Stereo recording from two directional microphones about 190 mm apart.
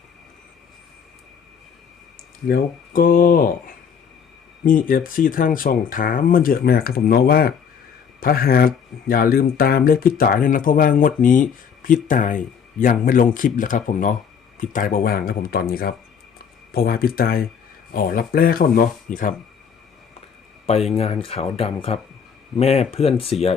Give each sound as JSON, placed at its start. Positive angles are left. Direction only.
{"t": 2.5, "sound": "speech", "side_deg": 50}
{"t": 20.9, "sound": "speech", "side_deg": 30}